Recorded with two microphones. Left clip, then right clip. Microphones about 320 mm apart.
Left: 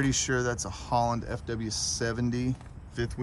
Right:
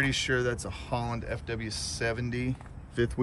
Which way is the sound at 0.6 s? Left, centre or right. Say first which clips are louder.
Left 6 dB; centre.